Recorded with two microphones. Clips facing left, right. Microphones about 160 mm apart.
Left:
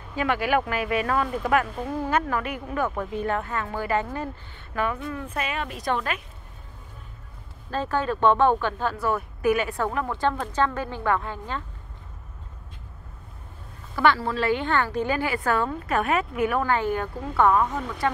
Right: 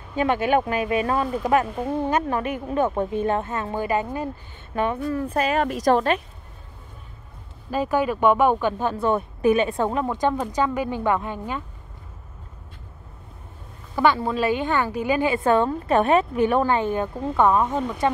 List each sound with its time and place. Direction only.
0.1 s a woman's voice: 25° right (ahead or behind)
5.1 s a woman's voice: 35° right (ahead or behind)
7.7 s a woman's voice: 10° right (ahead or behind)
8.9 s a woman's voice: 25° right (ahead or behind)
13.9 s a woman's voice: 15° right (ahead or behind)